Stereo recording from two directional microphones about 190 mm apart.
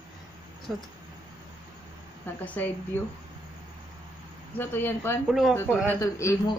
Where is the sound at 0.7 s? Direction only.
5° right (ahead or behind).